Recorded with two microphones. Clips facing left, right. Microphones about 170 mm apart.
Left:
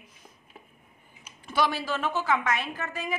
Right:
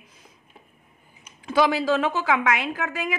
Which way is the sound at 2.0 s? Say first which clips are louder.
Right 4 dB; 90° right.